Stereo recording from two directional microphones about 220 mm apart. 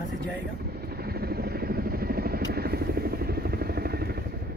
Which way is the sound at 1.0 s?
45° right (ahead or behind).